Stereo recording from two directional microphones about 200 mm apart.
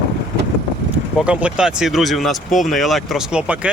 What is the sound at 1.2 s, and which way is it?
Speech, 5° right (ahead or behind).